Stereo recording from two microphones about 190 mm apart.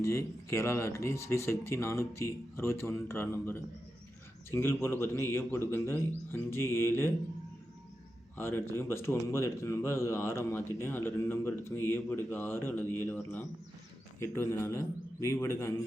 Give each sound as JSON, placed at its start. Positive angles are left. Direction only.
{"t": 0.0, "sound": "speech", "side_deg": 15}
{"t": 8.4, "sound": "speech", "side_deg": 15}